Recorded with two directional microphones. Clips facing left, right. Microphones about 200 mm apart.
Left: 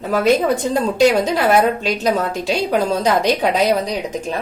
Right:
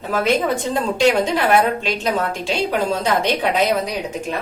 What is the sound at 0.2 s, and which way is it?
A woman's voice, 40° left (ahead or behind).